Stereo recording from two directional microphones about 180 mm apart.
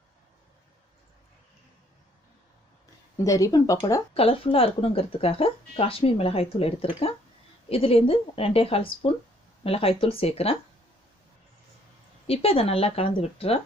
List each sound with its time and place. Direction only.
3.2 s speech: 20° left (ahead or behind)
4.1 s speech: 30° left (ahead or behind)
12.3 s speech: 30° left (ahead or behind)